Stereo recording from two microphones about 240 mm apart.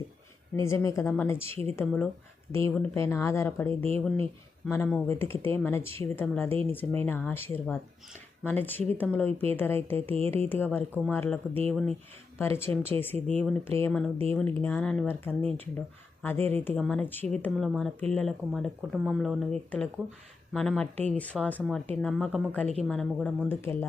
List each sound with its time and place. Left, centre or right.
0.5 s speech: centre
1.5 s speech: right
1.7 s speech: centre
13.1 s speech: right
13.4 s speech: centre